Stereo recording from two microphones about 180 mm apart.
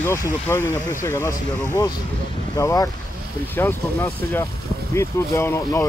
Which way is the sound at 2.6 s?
20° left (ahead or behind).